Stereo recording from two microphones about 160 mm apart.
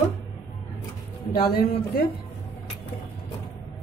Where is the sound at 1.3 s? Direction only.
75° left (ahead or behind).